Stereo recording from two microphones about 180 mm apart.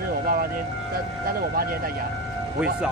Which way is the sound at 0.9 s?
55° right (ahead or behind).